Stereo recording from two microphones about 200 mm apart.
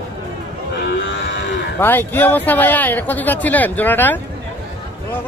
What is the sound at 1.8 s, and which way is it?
Speech, 10° left (ahead or behind).